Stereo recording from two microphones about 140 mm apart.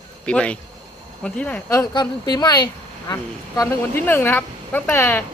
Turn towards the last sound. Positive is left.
turn(degrees=15)  # may be behind; listen again after turning